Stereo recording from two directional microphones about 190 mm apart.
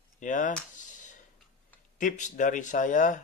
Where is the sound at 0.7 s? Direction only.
40° left (ahead or behind).